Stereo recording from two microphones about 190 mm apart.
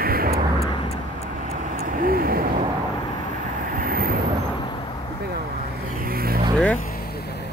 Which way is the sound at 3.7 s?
50° right (ahead or behind).